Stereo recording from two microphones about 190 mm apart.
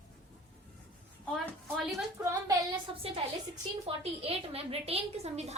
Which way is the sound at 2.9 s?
25° right (ahead or behind).